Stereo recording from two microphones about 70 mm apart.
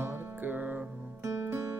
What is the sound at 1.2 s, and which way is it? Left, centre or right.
Music, right.